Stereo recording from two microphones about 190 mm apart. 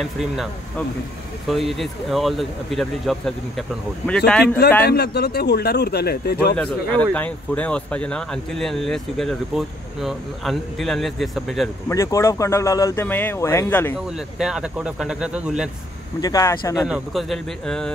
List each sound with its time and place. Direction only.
0.0 s speech: centre (ahead or behind)
4.8 s a man's voice: 55° left (ahead or behind)
6.6 s speech: 5° left (ahead or behind)
11.9 s speech: 15° left (ahead or behind)
14.0 s speech: 5° right (ahead or behind)
16.2 s speech: 20° left (ahead or behind)
16.7 s speech: 5° right (ahead or behind)